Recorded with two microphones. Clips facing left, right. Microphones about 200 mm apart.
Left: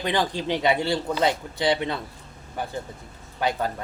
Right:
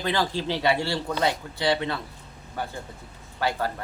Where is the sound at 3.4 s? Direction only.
20° left (ahead or behind).